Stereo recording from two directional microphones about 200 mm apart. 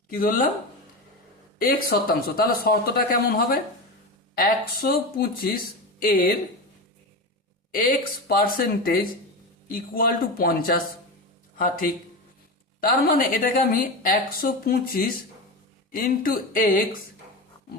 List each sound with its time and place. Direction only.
0.1 s a woman's voice: 45° left (ahead or behind)
1.5 s a woman's voice: 45° left (ahead or behind)
7.7 s a woman's voice: 45° left (ahead or behind)